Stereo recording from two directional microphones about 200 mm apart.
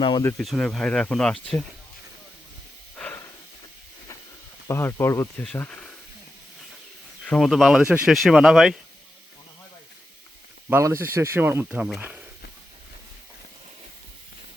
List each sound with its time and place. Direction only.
0.0 s speech: 20° left (ahead or behind)
0.3 s speech: 5° left (ahead or behind)
2.9 s a sound: 10° left (ahead or behind)
4.7 s speech: 15° left (ahead or behind)
7.3 s speech: centre (ahead or behind)
10.7 s speech: 10° right (ahead or behind)